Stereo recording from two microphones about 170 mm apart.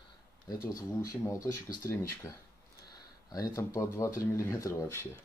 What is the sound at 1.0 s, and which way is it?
Speech, 20° left (ahead or behind).